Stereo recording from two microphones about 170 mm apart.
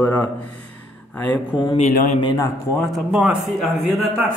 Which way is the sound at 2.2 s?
30° left (ahead or behind).